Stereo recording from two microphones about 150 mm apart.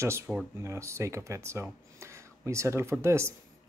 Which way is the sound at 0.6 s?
15° right (ahead or behind).